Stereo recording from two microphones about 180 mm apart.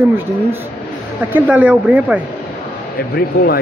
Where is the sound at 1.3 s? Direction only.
10° right (ahead or behind).